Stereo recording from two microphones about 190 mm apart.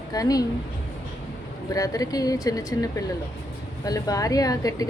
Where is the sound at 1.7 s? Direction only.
20° left (ahead or behind).